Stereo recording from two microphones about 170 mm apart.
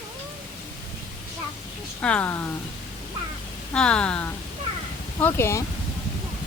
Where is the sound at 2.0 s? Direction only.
10° left (ahead or behind).